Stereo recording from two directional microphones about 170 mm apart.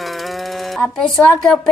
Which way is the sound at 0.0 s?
Centre (ahead or behind).